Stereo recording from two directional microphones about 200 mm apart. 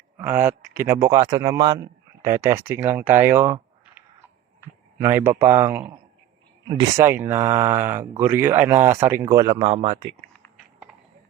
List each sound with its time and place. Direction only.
0.2 s speech: 15° right (ahead or behind)
6.7 s speech: 25° right (ahead or behind)
7.0 s speech: 10° right (ahead or behind)
9.6 s speech: 30° right (ahead or behind)